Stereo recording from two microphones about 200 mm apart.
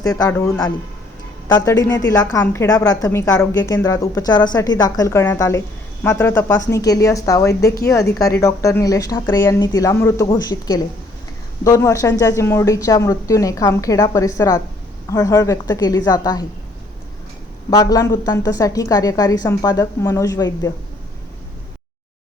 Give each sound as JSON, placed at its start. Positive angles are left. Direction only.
{"t": 0.0, "sound": "a woman's voice", "side_deg": 15}
{"t": 17.7, "sound": "a woman's voice", "side_deg": 20}